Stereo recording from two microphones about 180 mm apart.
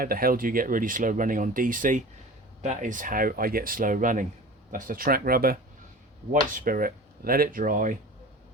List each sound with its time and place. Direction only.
0.0 s speech: 55° right (ahead or behind)